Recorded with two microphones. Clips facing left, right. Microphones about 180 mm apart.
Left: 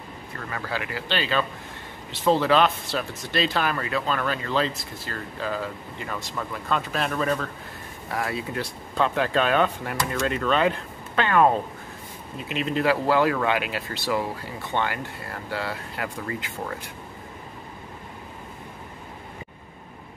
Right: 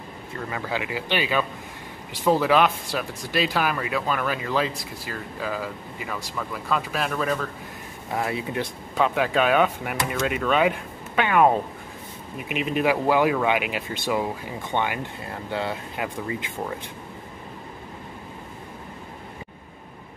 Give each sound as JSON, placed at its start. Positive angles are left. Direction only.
{"t": 0.5, "sound": "speech", "side_deg": -15}
{"t": 8.1, "sound": "speech", "side_deg": -20}
{"t": 8.9, "sound": "speech", "side_deg": -10}